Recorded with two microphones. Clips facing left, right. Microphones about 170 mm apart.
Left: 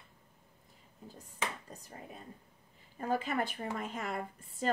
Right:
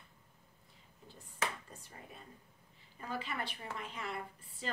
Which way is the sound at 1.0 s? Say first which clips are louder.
Left 1 dB; 40° left (ahead or behind).